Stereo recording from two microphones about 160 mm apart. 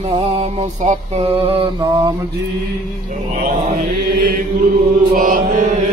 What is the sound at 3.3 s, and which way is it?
Mantra, 40° right (ahead or behind).